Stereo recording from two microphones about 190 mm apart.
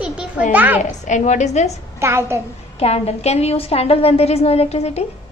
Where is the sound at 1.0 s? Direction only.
40° left (ahead or behind).